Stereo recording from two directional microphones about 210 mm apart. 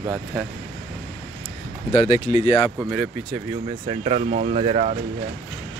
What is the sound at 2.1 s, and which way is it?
Speech, 35° left (ahead or behind).